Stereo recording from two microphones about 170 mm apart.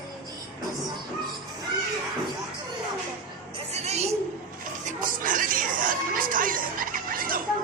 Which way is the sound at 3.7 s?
40° right (ahead or behind).